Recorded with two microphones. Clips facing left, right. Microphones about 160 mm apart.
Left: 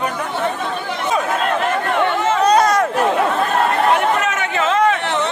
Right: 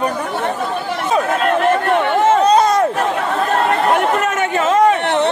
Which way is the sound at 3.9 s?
45° right (ahead or behind).